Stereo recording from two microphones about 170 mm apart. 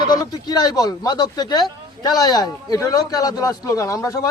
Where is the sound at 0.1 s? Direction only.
25° left (ahead or behind).